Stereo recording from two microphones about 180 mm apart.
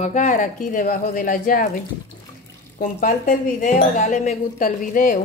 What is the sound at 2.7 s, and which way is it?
Speech, 55° left (ahead or behind).